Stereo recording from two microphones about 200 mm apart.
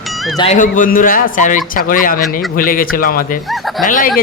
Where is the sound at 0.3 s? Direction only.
35° left (ahead or behind).